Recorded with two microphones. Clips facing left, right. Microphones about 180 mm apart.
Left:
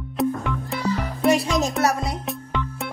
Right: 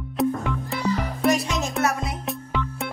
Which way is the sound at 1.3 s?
35° left (ahead or behind).